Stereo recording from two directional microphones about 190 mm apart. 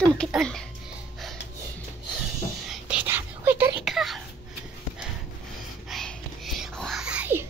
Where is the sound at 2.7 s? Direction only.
5° right (ahead or behind).